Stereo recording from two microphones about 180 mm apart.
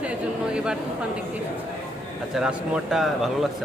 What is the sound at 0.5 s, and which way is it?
Speech, 5° right (ahead or behind).